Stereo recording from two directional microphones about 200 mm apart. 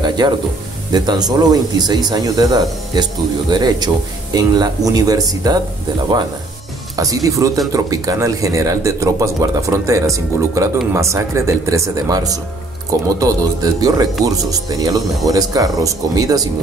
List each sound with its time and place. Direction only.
0.2 s speech: 20° right (ahead or behind)
7.0 s speech: 15° right (ahead or behind)